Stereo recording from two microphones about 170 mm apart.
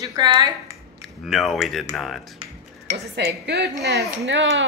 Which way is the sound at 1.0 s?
Centre (ahead or behind).